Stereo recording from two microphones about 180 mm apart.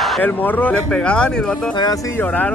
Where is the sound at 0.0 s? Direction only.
Centre (ahead or behind).